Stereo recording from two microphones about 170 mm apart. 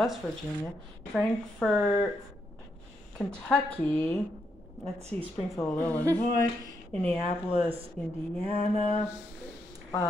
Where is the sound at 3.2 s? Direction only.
5° left (ahead or behind).